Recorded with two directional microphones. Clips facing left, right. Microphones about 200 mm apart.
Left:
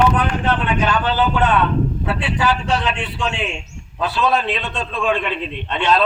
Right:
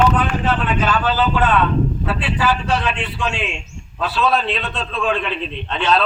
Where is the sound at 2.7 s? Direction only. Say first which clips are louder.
Even; centre (ahead or behind).